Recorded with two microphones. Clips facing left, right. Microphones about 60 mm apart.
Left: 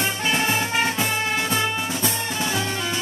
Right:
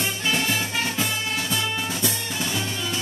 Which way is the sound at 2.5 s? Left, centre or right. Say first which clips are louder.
Left 3 dB; left.